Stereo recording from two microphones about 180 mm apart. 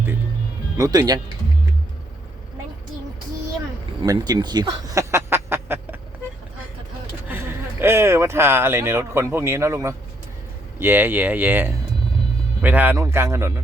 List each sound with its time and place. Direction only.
0.8 s speech: 20° right (ahead or behind)
4.0 s a sound: 20° right (ahead or behind)
7.8 s speech: 15° right (ahead or behind)